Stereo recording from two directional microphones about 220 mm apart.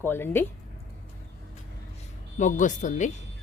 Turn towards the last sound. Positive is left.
turn(degrees=35)  # may be behind; listen again after turning